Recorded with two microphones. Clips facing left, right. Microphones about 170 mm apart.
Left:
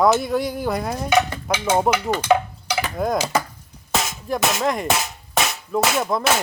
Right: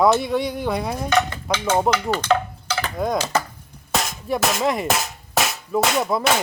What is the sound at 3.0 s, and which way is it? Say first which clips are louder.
Speech: even; 5° left (ahead or behind).